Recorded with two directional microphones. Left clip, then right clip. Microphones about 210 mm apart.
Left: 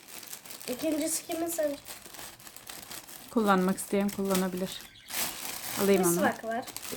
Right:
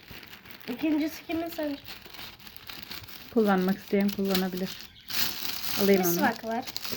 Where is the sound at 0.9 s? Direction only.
20° left (ahead or behind).